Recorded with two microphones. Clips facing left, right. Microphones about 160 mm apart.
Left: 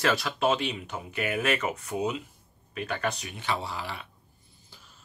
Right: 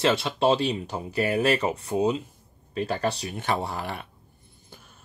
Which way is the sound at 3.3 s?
50° right (ahead or behind).